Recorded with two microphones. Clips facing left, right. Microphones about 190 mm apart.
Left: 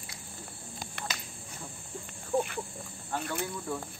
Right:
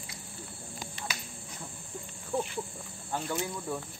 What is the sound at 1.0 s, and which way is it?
Cricket, 60° left (ahead or behind).